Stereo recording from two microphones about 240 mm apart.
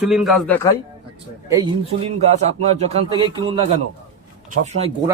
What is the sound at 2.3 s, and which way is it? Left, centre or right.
A man's voice, right.